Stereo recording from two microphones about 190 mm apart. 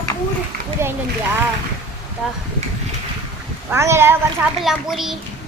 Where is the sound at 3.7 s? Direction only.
15° right (ahead or behind).